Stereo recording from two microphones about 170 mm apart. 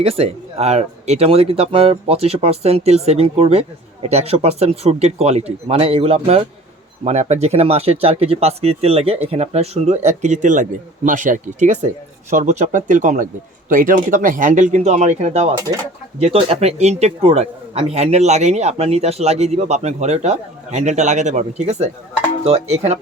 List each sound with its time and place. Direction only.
0.0 s speech: 35° right (ahead or behind)